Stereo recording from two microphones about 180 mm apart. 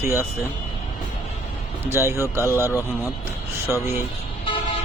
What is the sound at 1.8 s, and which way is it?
Speech, 15° right (ahead or behind).